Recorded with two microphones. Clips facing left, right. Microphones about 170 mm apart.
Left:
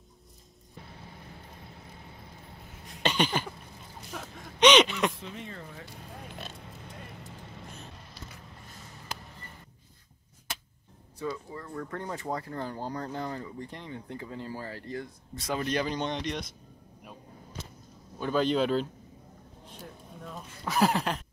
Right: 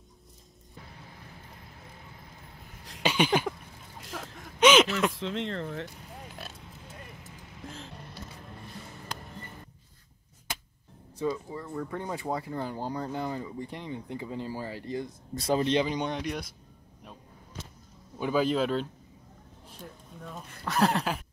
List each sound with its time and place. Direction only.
3.0 s a sound: 10° right (ahead or behind)
5.1 s speech: 90° right
11.1 s speech: 20° right (ahead or behind)
11.6 s speech: 5° right (ahead or behind)
15.3 s speech: 30° right (ahead or behind); by 16.4 s 5° right (ahead or behind)
18.2 s speech: 5° right (ahead or behind)
19.8 s a sound: centre (ahead or behind)